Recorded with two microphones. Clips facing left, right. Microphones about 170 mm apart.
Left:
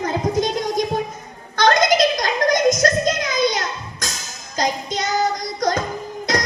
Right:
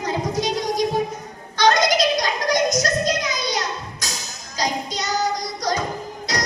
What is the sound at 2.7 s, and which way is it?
Music, 50° left (ahead or behind).